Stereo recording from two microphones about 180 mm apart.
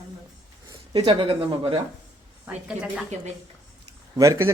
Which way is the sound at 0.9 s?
25° right (ahead or behind).